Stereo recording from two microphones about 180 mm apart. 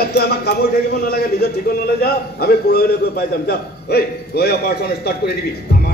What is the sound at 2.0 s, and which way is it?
A man's voice, 60° left (ahead or behind).